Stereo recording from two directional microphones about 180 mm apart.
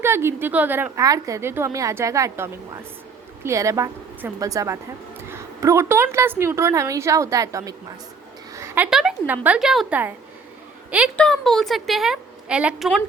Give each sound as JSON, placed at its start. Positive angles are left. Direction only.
{"t": 0.0, "sound": "a woman's voice", "side_deg": -15}
{"t": 11.2, "sound": "a woman's voice", "side_deg": 0}